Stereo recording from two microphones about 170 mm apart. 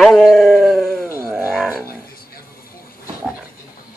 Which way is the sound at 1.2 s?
15° right (ahead or behind).